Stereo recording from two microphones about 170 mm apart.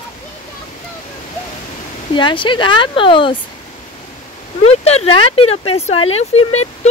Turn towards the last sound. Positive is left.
turn(degrees=40)  # may be behind; listen again after turning